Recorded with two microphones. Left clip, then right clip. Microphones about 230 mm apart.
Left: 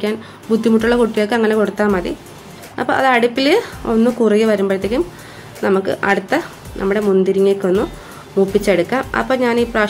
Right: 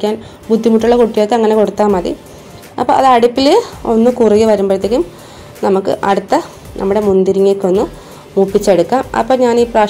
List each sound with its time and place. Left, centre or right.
0.0 s a woman's voice: centre